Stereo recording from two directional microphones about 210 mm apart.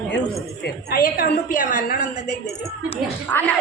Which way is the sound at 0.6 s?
45° left (ahead or behind).